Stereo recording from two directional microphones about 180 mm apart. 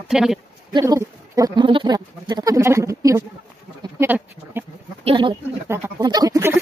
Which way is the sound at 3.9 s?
10° right (ahead or behind).